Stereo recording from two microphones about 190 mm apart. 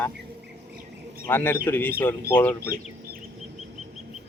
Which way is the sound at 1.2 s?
10° left (ahead or behind).